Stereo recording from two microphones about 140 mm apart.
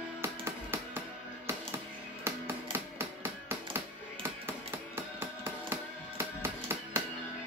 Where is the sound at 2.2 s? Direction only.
15° right (ahead or behind).